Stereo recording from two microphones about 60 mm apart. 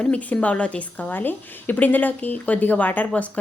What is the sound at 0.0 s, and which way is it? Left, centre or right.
A woman's voice, left.